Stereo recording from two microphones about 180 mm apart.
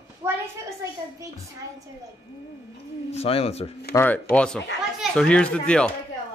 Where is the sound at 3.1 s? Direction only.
35° left (ahead or behind).